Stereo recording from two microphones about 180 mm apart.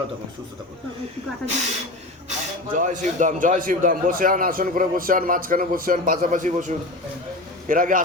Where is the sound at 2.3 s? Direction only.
45° right (ahead or behind).